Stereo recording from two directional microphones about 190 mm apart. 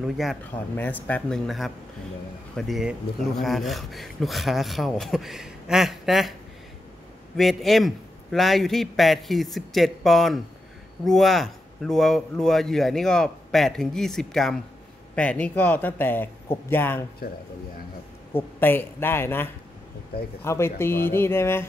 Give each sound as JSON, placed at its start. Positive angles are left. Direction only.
{"t": 0.0, "sound": "speech", "side_deg": 0}
{"t": 7.3, "sound": "speech", "side_deg": 0}
{"t": 17.2, "sound": "speech", "side_deg": 50}
{"t": 18.3, "sound": "speech", "side_deg": 10}